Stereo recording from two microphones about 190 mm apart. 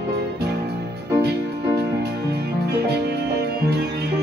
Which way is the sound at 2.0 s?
55° right (ahead or behind).